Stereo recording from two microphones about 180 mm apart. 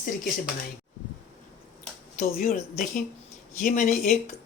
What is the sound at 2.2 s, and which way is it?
Speech, 45° left (ahead or behind).